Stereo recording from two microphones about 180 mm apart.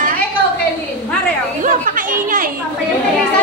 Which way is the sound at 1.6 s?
50° right (ahead or behind).